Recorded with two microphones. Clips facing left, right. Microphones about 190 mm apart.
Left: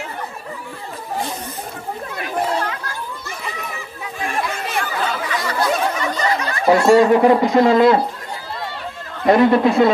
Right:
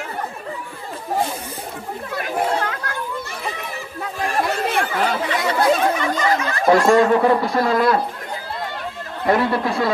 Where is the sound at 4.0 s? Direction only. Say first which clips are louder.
Right 2 dB; 40° right (ahead or behind).